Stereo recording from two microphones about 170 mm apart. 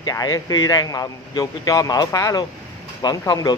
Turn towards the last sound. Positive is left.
turn(degrees=20)  # may be behind; listen again after turning